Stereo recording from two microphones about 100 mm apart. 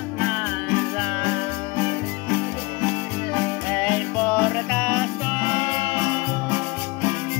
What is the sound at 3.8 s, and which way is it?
Music, 10° left (ahead or behind).